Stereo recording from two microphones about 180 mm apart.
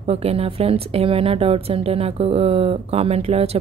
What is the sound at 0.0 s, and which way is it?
Speech, 35° right (ahead or behind).